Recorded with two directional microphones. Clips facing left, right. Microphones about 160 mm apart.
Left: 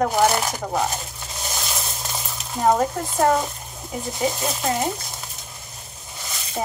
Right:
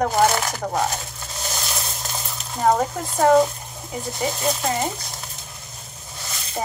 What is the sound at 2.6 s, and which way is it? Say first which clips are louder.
Speech: even; centre (ahead or behind).